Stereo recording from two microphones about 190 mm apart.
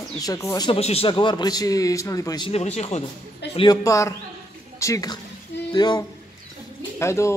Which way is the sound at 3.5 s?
20° left (ahead or behind).